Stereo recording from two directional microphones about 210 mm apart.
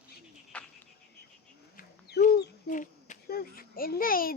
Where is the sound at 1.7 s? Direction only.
45° left (ahead or behind).